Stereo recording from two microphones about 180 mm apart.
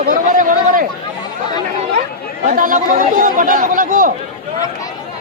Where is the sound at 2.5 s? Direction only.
45° right (ahead or behind).